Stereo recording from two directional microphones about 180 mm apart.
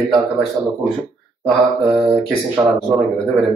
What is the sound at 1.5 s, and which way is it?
Speech, centre (ahead or behind).